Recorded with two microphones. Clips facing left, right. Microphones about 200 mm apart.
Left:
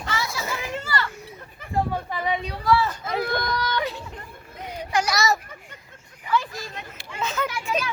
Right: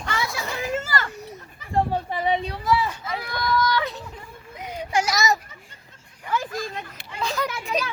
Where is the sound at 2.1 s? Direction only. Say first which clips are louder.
Right 3 dB; 30° right (ahead or behind).